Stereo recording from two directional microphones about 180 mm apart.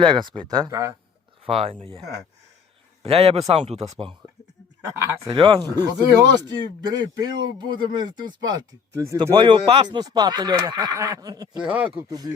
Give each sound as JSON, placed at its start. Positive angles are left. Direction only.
{"t": 0.0, "sound": "speech", "side_deg": -25}
{"t": 1.5, "sound": "speech", "side_deg": -35}
{"t": 3.0, "sound": "speech", "side_deg": -35}
{"t": 5.3, "sound": "speech", "side_deg": -25}
{"t": 11.6, "sound": "speech", "side_deg": -10}
{"t": 12.0, "sound": "speech", "side_deg": -20}